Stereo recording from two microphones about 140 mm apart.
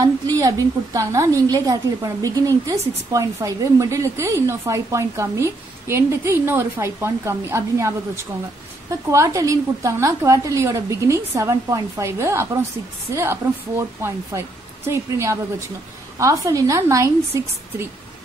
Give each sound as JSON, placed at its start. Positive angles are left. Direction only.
{"t": 0.0, "sound": "a woman's voice", "side_deg": -25}
{"t": 9.1, "sound": "a woman's voice", "side_deg": -20}